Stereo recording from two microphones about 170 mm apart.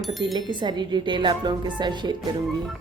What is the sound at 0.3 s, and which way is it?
A woman's voice, 25° right (ahead or behind).